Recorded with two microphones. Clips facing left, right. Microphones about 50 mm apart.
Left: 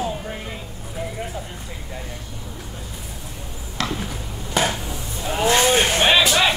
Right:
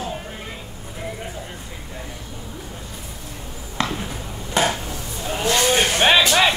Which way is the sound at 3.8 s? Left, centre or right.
Centre.